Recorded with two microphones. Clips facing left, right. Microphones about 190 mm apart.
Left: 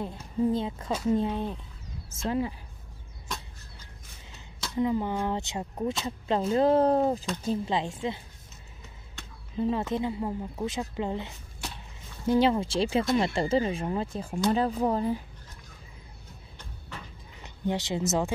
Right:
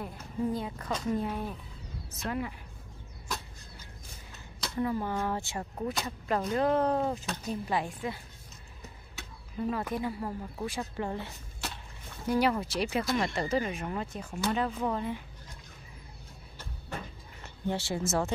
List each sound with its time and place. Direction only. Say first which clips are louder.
0.0 s speech: left 5 dB; 25° left (ahead or behind)
4.7 s speech: left 4 dB; 15° left (ahead or behind)
9.6 s speech: left 4 dB; 25° left (ahead or behind)
17.4 s a woman's voice: left 3 dB; 15° left (ahead or behind)